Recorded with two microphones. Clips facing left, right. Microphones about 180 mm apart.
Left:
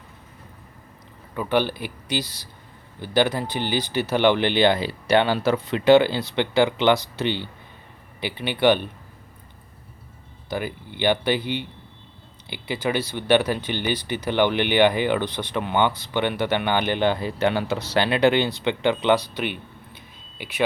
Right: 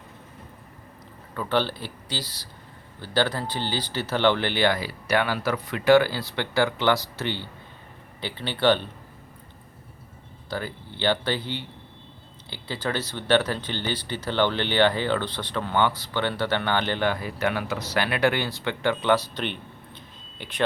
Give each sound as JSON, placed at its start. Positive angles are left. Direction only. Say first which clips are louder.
{"t": 1.3, "sound": "speech", "louder": "left 3 dB", "side_deg": 15}
{"t": 10.5, "sound": "speech", "louder": "left 3 dB", "side_deg": 15}